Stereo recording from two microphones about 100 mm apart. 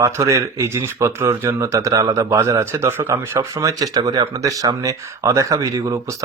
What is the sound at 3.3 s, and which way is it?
Speech, 35° right (ahead or behind).